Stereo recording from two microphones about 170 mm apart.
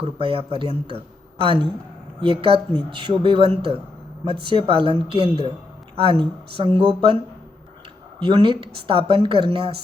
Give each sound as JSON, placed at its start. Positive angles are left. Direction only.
{"t": 0.0, "sound": "speech", "side_deg": -30}
{"t": 8.2, "sound": "speech", "side_deg": -25}